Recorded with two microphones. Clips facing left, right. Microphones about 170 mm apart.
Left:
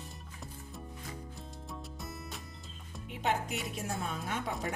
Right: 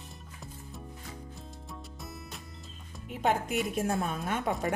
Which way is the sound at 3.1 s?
50° right (ahead or behind).